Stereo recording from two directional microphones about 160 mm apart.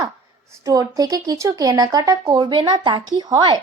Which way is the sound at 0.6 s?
20° right (ahead or behind).